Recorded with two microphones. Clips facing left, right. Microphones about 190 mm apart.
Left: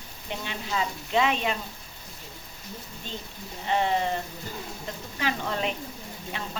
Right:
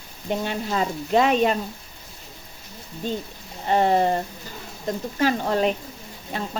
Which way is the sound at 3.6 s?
45° right (ahead or behind).